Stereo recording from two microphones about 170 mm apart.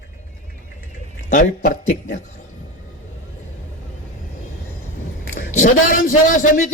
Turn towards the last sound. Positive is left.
turn(degrees=50)  # may be behind; listen again after turning